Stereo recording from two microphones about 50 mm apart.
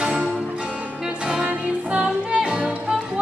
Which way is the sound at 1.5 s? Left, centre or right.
Right.